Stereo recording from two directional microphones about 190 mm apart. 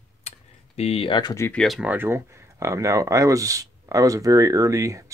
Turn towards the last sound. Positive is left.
turn(degrees=-15)  # may be behind; listen again after turning